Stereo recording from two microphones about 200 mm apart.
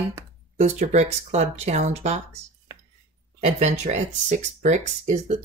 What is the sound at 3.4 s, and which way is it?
Speech, 35° right (ahead or behind).